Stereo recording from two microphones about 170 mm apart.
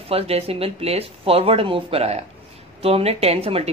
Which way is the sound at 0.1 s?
35° right (ahead or behind).